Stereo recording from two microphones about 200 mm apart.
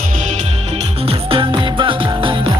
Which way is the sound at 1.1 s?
25° right (ahead or behind).